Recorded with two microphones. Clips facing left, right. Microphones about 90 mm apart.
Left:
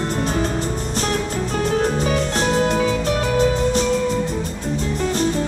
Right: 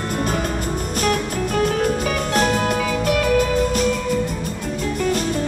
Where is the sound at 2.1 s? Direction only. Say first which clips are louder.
Even; 45° right (ahead or behind).